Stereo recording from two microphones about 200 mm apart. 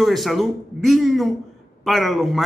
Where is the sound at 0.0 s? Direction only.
Centre (ahead or behind).